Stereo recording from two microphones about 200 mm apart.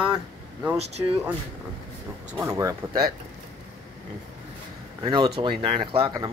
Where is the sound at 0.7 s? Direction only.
30° right (ahead or behind).